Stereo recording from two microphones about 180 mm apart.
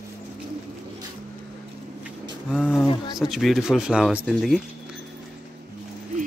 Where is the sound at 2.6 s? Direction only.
5° left (ahead or behind).